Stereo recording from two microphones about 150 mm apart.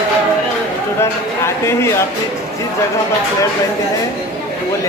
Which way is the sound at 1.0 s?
20° left (ahead or behind).